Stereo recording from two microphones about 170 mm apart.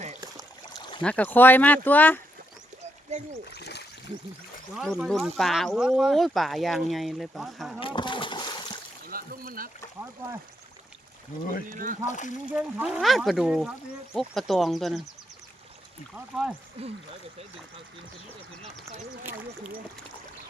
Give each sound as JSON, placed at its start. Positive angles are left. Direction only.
{"t": 1.0, "sound": "speech", "side_deg": 10}
{"t": 3.5, "sound": "splash", "side_deg": 75}
{"t": 4.8, "sound": "speech", "side_deg": 0}
{"t": 7.8, "sound": "splash", "side_deg": 30}
{"t": 9.0, "sound": "a sound", "side_deg": -60}
{"t": 11.7, "sound": "speech", "side_deg": -50}
{"t": 12.0, "sound": "speech", "side_deg": 45}
{"t": 12.5, "sound": "speech", "side_deg": -5}
{"t": 16.1, "sound": "speech", "side_deg": -10}